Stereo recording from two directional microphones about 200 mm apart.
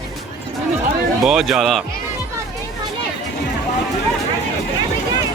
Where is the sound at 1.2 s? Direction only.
Centre (ahead or behind).